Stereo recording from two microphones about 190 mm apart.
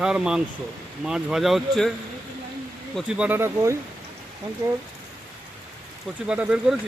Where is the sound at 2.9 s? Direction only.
5° right (ahead or behind).